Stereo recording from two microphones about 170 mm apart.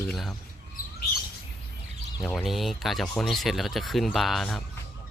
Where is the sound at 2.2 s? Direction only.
Centre (ahead or behind).